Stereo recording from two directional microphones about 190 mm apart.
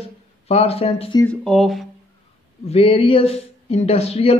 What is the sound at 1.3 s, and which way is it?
Speech, centre (ahead or behind).